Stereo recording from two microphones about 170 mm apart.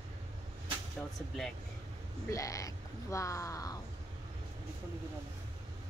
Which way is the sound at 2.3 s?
20° left (ahead or behind).